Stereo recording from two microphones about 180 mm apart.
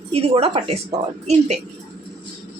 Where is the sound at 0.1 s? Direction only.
35° right (ahead or behind).